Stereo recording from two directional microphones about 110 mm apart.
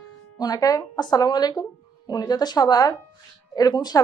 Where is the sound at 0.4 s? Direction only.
35° left (ahead or behind).